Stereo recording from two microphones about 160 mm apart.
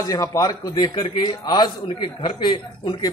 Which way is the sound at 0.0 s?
20° left (ahead or behind).